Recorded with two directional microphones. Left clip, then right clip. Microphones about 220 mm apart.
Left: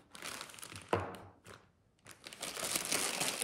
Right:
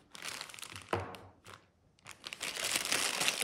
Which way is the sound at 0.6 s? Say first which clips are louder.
Left 2 dB; centre (ahead or behind).